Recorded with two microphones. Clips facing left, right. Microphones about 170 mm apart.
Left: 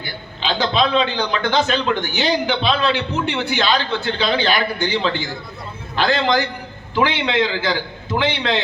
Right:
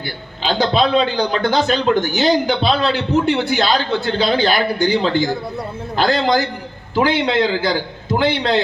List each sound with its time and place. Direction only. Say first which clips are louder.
0.4 s a man's voice: right 3 dB; 40° right (ahead or behind)